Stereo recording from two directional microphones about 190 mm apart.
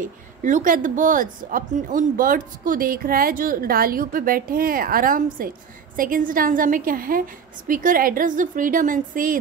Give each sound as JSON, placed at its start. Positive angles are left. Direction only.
{"t": 0.0, "sound": "a woman's voice", "side_deg": -40}